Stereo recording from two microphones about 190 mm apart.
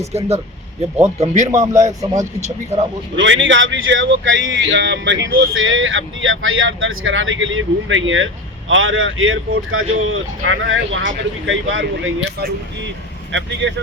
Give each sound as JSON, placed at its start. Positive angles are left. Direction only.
{"t": 0.1, "sound": "speech", "side_deg": -35}
{"t": 1.6, "sound": "speech", "side_deg": -15}
{"t": 3.2, "sound": "speech", "side_deg": -80}
{"t": 5.2, "sound": "speech", "side_deg": -90}